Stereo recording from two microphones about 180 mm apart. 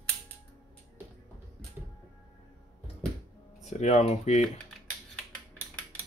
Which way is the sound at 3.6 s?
40° left (ahead or behind).